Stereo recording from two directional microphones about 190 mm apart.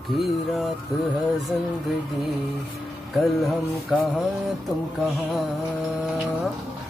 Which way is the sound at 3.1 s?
Centre (ahead or behind).